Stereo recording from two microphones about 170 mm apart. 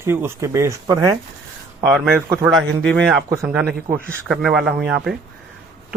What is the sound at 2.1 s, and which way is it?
A man's voice, 15° right (ahead or behind).